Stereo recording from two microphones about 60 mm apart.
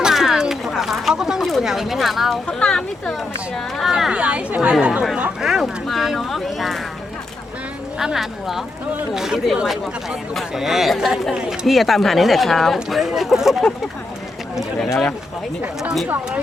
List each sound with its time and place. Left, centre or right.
0.0 s a sound: centre
1.4 s a sound: centre
1.6 s speech: centre
2.5 s speech: centre
3.8 s speech: centre
4.1 s speech: centre
5.4 s speech: centre
7.9 s speech: centre
15.8 s speech: centre